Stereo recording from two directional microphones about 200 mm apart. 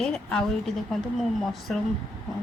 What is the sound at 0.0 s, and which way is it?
Speech, 5° left (ahead or behind).